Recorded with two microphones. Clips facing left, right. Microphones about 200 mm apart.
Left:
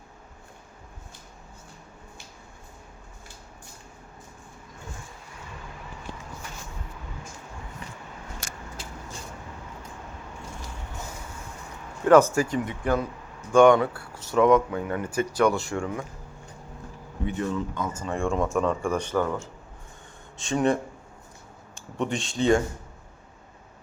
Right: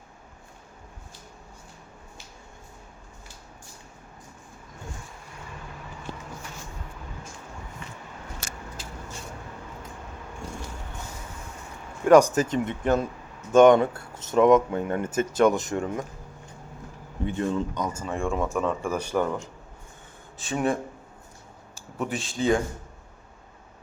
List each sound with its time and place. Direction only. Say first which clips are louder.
12.0 s speech: right 1 dB; 15° right (ahead or behind)
17.2 s speech: right 1 dB; 30° right (ahead or behind)
17.7 s speech: right 1 dB; 15° right (ahead or behind)
18.0 s speech: left 3 dB; centre (ahead or behind)
20.4 s speech: left 2 dB; 5° right (ahead or behind)
21.9 s speech: left 2 dB; 5° right (ahead or behind)